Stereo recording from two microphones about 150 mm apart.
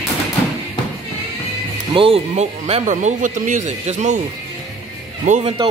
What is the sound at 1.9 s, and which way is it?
Speech, 40° right (ahead or behind).